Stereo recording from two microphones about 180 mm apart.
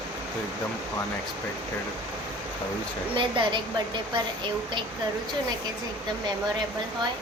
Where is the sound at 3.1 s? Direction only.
25° right (ahead or behind).